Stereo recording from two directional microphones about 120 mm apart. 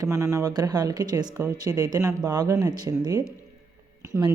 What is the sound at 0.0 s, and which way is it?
Speech, 25° right (ahead or behind).